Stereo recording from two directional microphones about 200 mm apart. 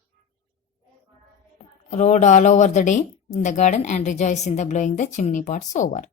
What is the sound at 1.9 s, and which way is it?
A woman's voice, 35° left (ahead or behind).